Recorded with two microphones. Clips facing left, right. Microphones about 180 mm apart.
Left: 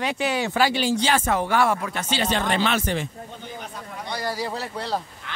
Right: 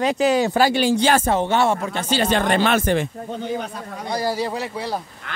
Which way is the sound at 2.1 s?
50° right (ahead or behind).